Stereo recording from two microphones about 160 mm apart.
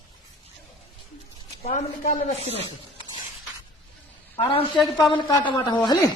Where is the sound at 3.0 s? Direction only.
25° right (ahead or behind).